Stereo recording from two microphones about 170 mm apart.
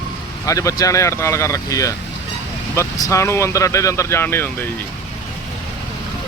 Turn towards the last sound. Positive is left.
turn(degrees=15)  # may be behind; listen again after turning